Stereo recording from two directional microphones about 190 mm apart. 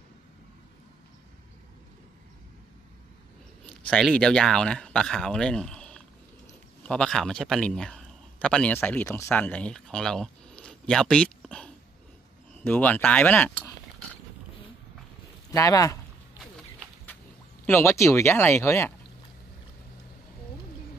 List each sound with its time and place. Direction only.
3.6 s a man's voice: 5° left (ahead or behind)
15.5 s speech: 20° left (ahead or behind)
17.6 s speech: 15° left (ahead or behind)